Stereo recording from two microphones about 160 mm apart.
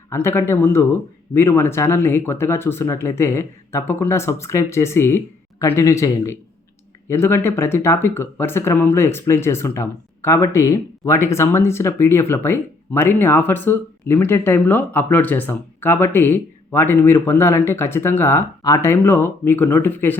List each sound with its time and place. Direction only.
0.1 s speech: 15° left (ahead or behind)